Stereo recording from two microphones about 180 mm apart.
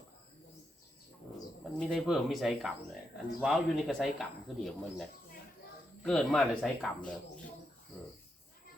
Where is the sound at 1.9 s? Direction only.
Centre (ahead or behind).